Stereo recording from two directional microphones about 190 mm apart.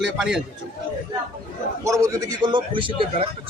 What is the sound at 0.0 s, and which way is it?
Speech, centre (ahead or behind).